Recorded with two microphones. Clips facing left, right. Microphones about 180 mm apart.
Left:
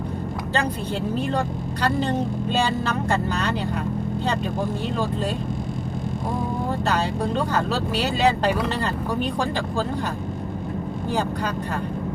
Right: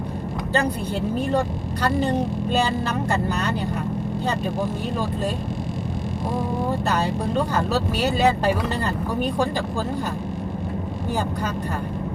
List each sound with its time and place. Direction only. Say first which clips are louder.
7.9 s speech: even; 50° right (ahead or behind)